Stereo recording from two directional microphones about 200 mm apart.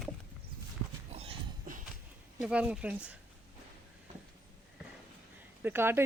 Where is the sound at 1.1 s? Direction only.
30° right (ahead or behind).